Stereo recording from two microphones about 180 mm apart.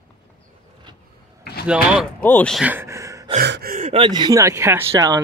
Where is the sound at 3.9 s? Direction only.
25° right (ahead or behind).